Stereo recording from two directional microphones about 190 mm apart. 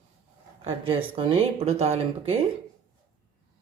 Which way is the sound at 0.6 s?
30° right (ahead or behind).